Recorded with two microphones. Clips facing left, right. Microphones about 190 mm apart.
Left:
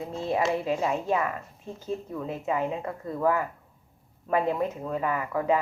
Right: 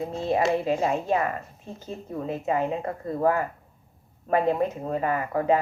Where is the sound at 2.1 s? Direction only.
45° right (ahead or behind).